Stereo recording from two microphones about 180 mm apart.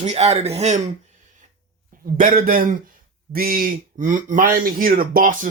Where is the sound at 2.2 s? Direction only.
50° right (ahead or behind).